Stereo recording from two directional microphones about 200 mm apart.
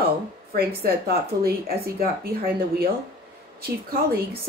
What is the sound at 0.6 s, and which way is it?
Speech, 50° right (ahead or behind).